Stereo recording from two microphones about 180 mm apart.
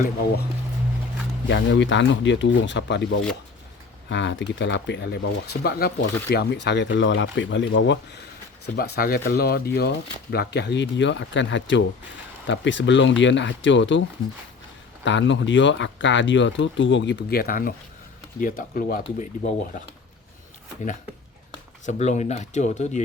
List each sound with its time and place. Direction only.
1.5 s speech: 80° left
8.6 s speech: 60° left (ahead or behind); by 14.0 s 90° left
15.0 s speech: 90° left; by 19.8 s 45° left (ahead or behind)
21.8 s speech: 40° left (ahead or behind)